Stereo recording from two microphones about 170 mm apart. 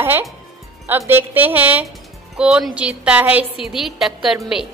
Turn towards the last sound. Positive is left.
turn(degrees=-5)  # may be behind; listen again after turning